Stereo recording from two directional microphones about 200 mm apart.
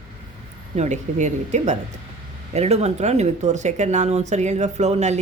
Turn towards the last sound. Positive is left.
turn(degrees=-35)  # may be behind; listen again after turning